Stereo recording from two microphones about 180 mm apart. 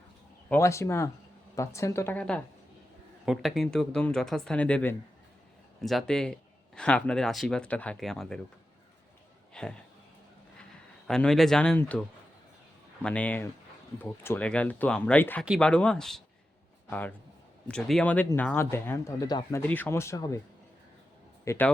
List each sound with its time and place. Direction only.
0.5 s speech: 15° left (ahead or behind)
9.5 s speech: 5° left (ahead or behind); by 19.6 s 20° left (ahead or behind)
19.6 s speech: 10° left (ahead or behind)
21.4 s a man's voice: 15° left (ahead or behind)